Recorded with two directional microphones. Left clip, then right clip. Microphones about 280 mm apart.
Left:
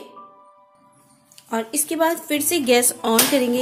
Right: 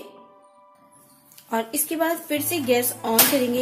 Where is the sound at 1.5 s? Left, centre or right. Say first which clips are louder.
Left 1 dB; centre.